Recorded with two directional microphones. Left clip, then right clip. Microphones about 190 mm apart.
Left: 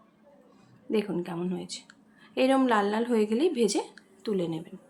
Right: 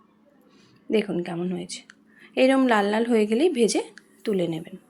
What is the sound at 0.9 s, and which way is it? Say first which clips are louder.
A woman's voice: right 5 dB; 15° right (ahead or behind).